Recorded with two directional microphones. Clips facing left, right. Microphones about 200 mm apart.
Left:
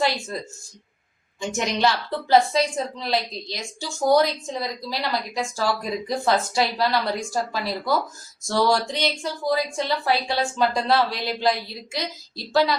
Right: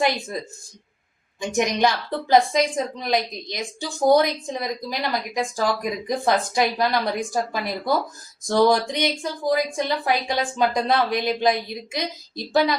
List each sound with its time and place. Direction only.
1.4 s a woman's voice: 15° right (ahead or behind)